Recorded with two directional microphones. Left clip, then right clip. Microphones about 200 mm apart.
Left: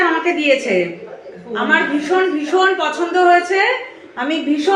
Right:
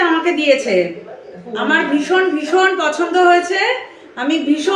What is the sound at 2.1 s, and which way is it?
A woman's voice, 10° right (ahead or behind).